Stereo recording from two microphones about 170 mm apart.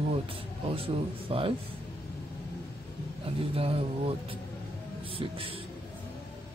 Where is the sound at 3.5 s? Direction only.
35° right (ahead or behind).